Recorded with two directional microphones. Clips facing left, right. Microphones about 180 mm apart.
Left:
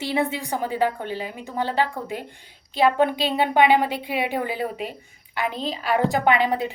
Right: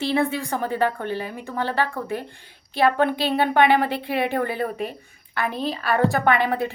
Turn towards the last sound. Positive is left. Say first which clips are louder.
# even
turn(degrees=15)  # may be behind; listen again after turning